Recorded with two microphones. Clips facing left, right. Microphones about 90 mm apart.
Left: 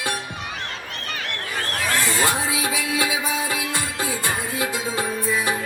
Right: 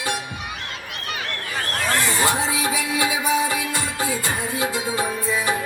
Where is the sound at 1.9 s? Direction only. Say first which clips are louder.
Right 1 dB; 20° right (ahead or behind).